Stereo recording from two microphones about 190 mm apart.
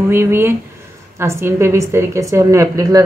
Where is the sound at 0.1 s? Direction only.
10° right (ahead or behind).